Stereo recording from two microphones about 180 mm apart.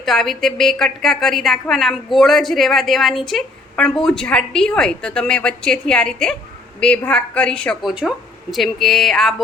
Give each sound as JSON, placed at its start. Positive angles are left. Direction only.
{"t": 0.0, "sound": "a woman's voice", "side_deg": 0}